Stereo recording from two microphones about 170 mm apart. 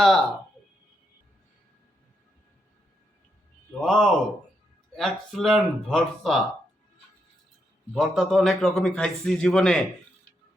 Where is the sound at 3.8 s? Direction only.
Centre (ahead or behind).